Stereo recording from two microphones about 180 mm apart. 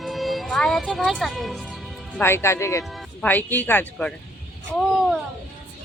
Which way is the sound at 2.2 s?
15° left (ahead or behind).